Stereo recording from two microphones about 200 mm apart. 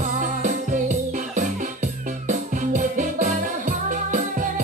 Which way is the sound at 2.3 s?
40° right (ahead or behind).